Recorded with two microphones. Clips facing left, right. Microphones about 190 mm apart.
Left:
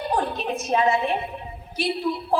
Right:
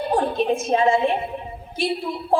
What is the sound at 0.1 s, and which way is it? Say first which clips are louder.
A woman's voice: right 6 dB; 30° right (ahead or behind).